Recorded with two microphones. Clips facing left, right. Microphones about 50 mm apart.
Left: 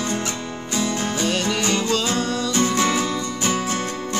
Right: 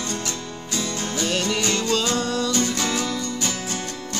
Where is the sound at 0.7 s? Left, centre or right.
Left.